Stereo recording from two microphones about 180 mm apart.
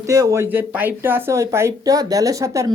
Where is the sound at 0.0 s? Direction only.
20° right (ahead or behind).